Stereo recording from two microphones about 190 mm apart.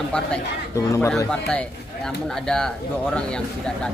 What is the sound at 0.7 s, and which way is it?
Speech, 15° left (ahead or behind).